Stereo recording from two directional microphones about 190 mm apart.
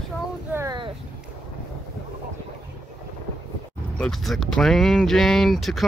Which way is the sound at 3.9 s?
Centre (ahead or behind).